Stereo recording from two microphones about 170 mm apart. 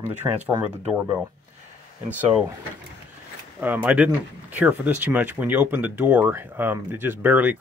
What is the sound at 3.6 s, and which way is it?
Speech, 10° right (ahead or behind).